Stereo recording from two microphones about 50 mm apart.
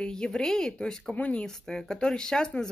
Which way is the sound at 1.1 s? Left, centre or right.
Left.